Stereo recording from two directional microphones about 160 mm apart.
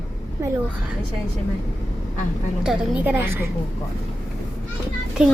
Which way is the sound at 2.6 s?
5° right (ahead or behind).